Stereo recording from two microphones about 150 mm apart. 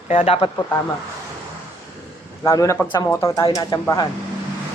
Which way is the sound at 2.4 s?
20° left (ahead or behind).